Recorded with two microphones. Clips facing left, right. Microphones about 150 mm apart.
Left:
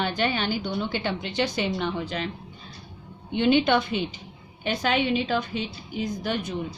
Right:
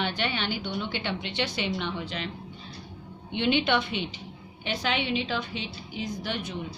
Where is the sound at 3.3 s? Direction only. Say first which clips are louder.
Left 4 dB; 45° left (ahead or behind).